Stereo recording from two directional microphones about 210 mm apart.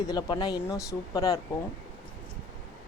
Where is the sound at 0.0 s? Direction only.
20° left (ahead or behind).